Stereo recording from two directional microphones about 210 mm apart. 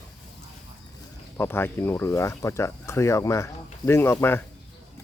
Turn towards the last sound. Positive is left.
turn(degrees=10)  # may be behind; listen again after turning